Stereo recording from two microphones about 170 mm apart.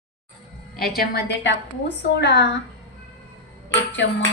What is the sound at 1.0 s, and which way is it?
A woman's voice, 80° left.